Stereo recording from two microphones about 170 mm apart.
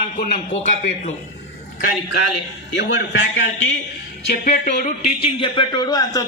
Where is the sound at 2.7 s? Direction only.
90° left.